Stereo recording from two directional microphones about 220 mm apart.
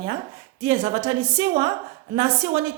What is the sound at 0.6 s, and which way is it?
A woman's voice, 30° right (ahead or behind).